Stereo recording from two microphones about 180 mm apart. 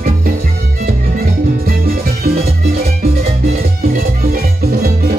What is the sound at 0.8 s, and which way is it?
Music, 55° right (ahead or behind).